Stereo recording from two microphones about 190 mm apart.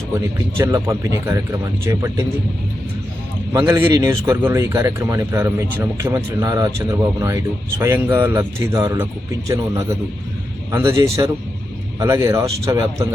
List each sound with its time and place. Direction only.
0.1 s speech: 15° right (ahead or behind)
3.5 s speech: 15° right (ahead or behind)